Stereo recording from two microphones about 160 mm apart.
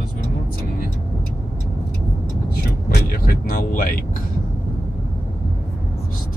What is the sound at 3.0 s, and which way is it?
Speech, 65° left (ahead or behind).